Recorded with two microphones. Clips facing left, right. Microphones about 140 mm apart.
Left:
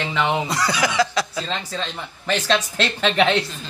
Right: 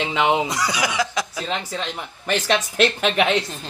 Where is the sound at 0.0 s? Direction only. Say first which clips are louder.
Right 2 dB; 20° right (ahead or behind).